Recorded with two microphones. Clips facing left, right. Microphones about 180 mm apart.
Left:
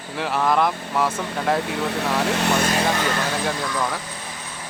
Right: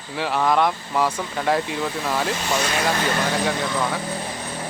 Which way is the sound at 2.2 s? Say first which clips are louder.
Left 3 dB; 65° left (ahead or behind).